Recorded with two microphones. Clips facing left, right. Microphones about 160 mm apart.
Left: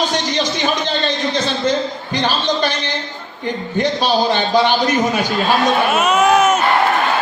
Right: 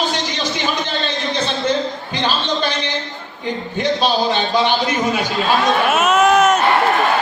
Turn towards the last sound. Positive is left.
turn(degrees=0)  # may be behind; listen again after turning